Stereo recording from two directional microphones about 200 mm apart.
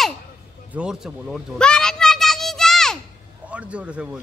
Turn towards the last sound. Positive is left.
turn(degrees=-5)  # may be behind; listen again after turning